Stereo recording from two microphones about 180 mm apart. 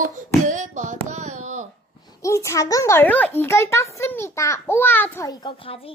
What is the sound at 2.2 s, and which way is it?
A child's voice, 15° left (ahead or behind).